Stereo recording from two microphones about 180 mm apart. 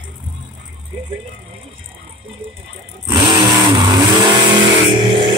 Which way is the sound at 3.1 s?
25° right (ahead or behind).